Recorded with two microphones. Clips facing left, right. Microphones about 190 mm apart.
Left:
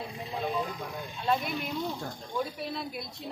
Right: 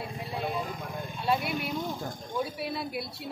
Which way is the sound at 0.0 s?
10° right (ahead or behind).